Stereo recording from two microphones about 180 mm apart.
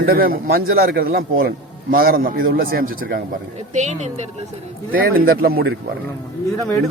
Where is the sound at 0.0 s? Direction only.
55° right (ahead or behind).